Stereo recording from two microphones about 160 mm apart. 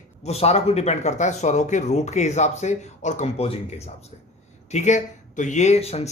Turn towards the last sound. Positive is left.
turn(degrees=40)  # may be behind; listen again after turning